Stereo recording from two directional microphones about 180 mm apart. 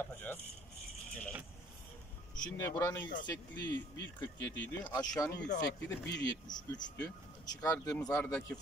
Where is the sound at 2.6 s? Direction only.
15° left (ahead or behind).